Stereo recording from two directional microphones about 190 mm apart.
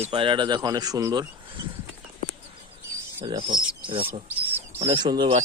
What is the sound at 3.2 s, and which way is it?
Speech, 25° right (ahead or behind).